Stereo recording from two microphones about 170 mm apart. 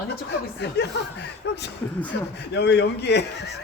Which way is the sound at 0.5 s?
90° left.